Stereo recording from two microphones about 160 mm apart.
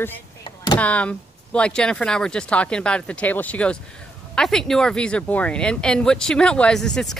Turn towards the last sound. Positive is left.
turn(degrees=5)  # may be behind; listen again after turning